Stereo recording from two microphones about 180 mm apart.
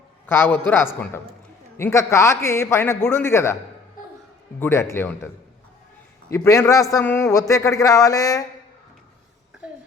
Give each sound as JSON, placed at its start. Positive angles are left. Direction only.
{"t": 0.3, "sound": "a man's voice", "side_deg": 10}
{"t": 4.6, "sound": "a man's voice", "side_deg": 15}
{"t": 6.3, "sound": "a man's voice", "side_deg": 15}